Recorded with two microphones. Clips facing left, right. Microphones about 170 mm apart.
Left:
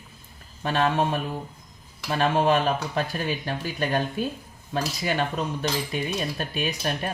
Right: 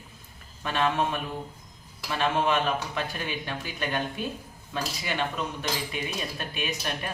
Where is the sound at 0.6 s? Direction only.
35° left (ahead or behind).